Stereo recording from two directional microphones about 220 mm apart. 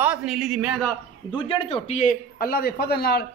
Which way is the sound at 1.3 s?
25° left (ahead or behind).